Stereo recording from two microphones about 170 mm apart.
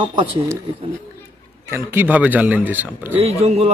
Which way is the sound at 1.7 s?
10° right (ahead or behind).